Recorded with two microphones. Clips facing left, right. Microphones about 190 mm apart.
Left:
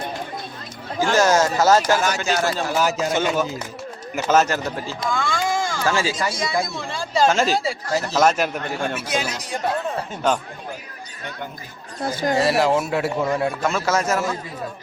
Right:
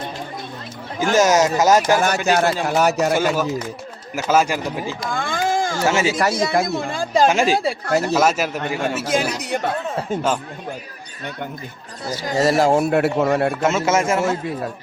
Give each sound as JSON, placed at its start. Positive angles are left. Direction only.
{"t": 0.9, "sound": "speech", "side_deg": -20}
{"t": 2.0, "sound": "speech", "side_deg": -55}
{"t": 3.1, "sound": "speech", "side_deg": -5}
{"t": 5.1, "sound": "a sound", "side_deg": -55}
{"t": 5.8, "sound": "a man's voice", "side_deg": -20}
{"t": 6.1, "sound": "speech", "side_deg": -60}
{"t": 7.3, "sound": "speech", "side_deg": -15}
{"t": 7.5, "sound": "speech", "side_deg": -60}
{"t": 8.0, "sound": "speech", "side_deg": -5}
{"t": 9.0, "sound": "speech", "side_deg": -50}
{"t": 12.4, "sound": "speech", "side_deg": -45}
{"t": 13.6, "sound": "a man's voice", "side_deg": -20}